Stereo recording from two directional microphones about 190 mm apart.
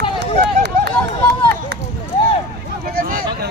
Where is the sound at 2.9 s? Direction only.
50° right (ahead or behind).